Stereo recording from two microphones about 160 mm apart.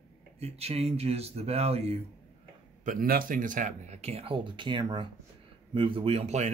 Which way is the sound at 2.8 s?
60° right (ahead or behind).